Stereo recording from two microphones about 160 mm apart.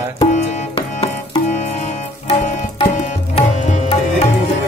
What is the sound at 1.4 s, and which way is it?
Music, 50° left (ahead or behind).